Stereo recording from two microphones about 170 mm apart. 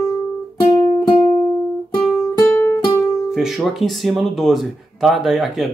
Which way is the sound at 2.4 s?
10° left (ahead or behind).